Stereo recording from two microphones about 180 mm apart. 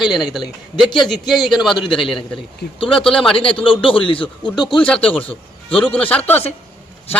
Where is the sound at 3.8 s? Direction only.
30° left (ahead or behind).